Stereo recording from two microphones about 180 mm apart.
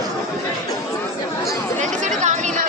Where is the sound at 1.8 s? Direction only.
40° right (ahead or behind).